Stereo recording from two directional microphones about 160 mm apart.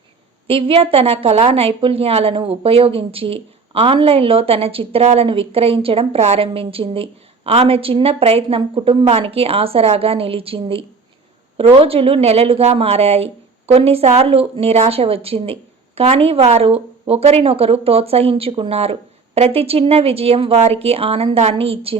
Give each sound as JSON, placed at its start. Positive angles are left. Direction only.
{"t": 0.4, "sound": "speech", "side_deg": -35}